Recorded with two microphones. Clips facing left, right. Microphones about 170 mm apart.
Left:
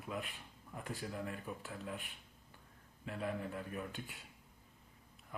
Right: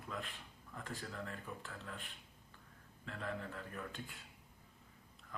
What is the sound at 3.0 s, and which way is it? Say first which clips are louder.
Speech: left 4 dB; 15° left (ahead or behind).